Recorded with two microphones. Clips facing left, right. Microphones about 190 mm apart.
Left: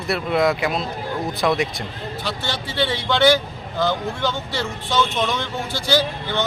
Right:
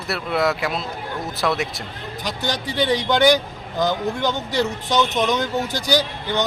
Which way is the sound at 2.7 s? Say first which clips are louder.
Right 3 dB; 15° right (ahead or behind).